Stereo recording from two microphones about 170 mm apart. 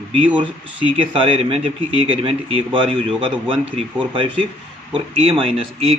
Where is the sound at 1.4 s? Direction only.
35° right (ahead or behind).